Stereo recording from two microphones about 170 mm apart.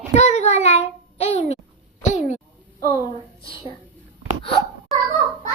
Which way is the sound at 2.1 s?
40° left (ahead or behind).